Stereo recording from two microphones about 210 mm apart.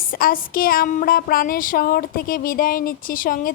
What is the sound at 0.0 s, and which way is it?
A woman's voice, 45° left (ahead or behind).